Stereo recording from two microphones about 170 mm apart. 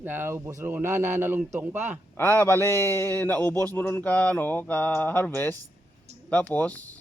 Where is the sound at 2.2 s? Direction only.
15° left (ahead or behind).